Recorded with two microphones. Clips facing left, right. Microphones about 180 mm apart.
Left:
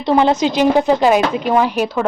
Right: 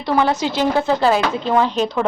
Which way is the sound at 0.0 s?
20° left (ahead or behind).